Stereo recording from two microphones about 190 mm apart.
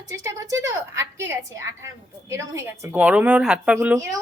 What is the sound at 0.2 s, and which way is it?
A woman's voice, 15° right (ahead or behind).